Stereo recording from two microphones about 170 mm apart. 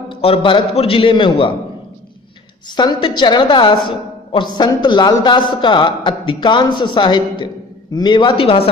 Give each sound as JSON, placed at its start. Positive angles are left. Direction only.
{"t": 0.1, "sound": "a man's voice", "side_deg": 30}
{"t": 2.6, "sound": "a woman's voice", "side_deg": 25}